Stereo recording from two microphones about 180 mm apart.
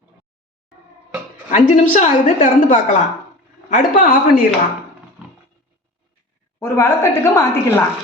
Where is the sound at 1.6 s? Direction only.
40° left (ahead or behind).